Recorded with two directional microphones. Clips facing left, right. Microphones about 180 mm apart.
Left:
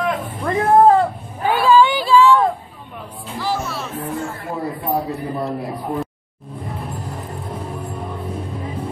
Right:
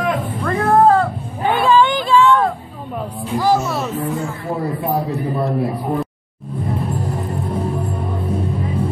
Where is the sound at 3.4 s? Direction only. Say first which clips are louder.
Right 7 dB; 45° right (ahead or behind).